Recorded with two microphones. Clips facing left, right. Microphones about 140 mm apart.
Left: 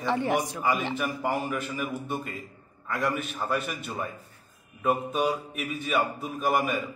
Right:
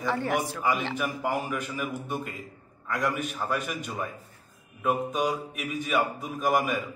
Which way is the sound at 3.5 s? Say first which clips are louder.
Left 3 dB; 10° right (ahead or behind).